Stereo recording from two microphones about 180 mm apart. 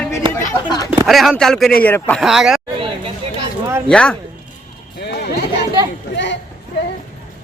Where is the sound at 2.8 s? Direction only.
30° right (ahead or behind).